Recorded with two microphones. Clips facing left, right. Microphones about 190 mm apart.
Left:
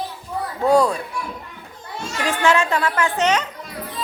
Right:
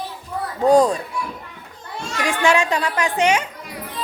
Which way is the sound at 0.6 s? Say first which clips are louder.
Right 2 dB; 45° right (ahead or behind).